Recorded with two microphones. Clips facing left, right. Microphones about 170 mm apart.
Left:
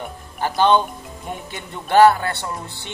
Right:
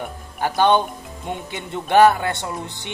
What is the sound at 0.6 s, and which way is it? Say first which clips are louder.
Speech: left 1 dB; 15° right (ahead or behind).